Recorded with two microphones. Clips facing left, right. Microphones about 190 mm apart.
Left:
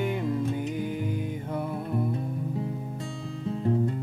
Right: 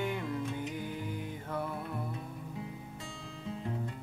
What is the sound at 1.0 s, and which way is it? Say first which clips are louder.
Music: left 8 dB; 20° left (ahead or behind).